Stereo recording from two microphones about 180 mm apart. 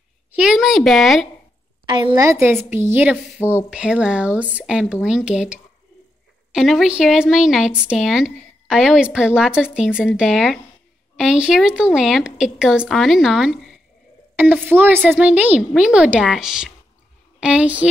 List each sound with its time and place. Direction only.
0.4 s speech: centre (ahead or behind)
1.9 s a woman's voice: 25° right (ahead or behind); by 17.8 s 5° right (ahead or behind)